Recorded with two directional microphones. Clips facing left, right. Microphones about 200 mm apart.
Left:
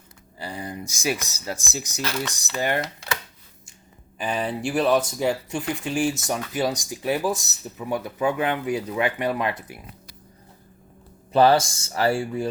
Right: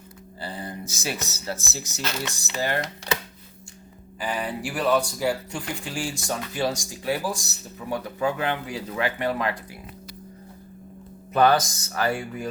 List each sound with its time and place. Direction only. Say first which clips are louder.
0.3 s a sound: left 2 dB; 15° left (ahead or behind)
1.3 s speech: left 1 dB; 15° left (ahead or behind)
4.2 s speech: left 3 dB; 25° left (ahead or behind)
11.3 s speech: left 2 dB; 30° left (ahead or behind)